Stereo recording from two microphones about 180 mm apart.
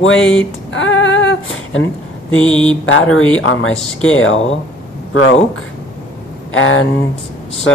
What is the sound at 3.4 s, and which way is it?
Speech, 90° left.